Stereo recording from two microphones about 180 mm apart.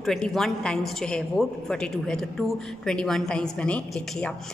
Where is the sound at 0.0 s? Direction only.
Centre (ahead or behind).